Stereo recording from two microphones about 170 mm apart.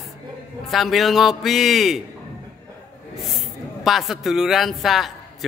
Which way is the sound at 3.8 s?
Centre (ahead or behind).